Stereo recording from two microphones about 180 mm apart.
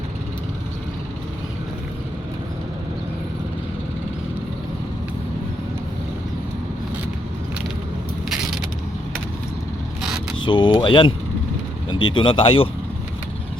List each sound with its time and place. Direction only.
10.4 s speech: 25° left (ahead or behind)